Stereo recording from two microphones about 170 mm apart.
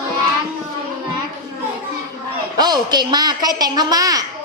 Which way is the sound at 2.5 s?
25° right (ahead or behind).